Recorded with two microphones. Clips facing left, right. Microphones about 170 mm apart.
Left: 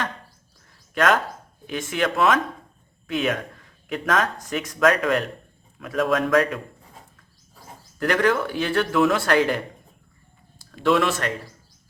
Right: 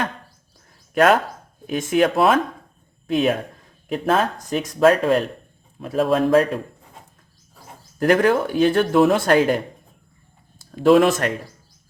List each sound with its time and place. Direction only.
0.9 s speech: 35° right (ahead or behind)
7.9 s speech: 40° right (ahead or behind)
10.7 s speech: 40° right (ahead or behind)